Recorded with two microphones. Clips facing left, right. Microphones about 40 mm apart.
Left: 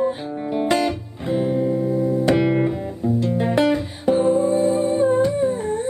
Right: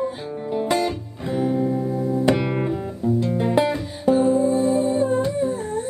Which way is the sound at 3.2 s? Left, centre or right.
Left.